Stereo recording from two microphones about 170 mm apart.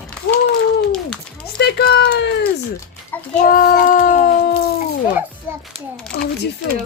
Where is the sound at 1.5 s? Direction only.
70° left (ahead or behind); by 2.3 s 90° left.